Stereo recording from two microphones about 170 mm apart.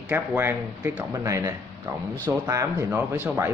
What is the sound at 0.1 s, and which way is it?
Speech, 10° right (ahead or behind).